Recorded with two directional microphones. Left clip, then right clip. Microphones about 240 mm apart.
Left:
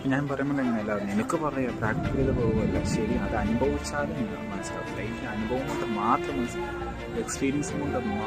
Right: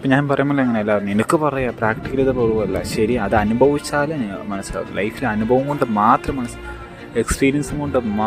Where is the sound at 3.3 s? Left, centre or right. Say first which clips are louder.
Right 13 dB; right.